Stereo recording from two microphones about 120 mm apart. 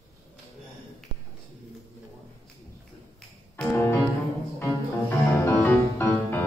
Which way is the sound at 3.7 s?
20° left (ahead or behind).